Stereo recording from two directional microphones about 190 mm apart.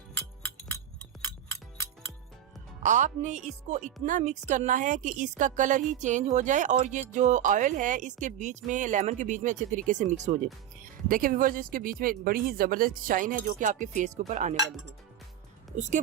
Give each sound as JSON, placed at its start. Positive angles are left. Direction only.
{"t": 2.8, "sound": "a woman's voice", "side_deg": -40}
{"t": 15.7, "sound": "a woman's voice", "side_deg": -40}